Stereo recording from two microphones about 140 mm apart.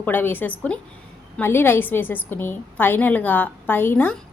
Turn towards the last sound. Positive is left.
turn(degrees=15)  # may be behind; listen again after turning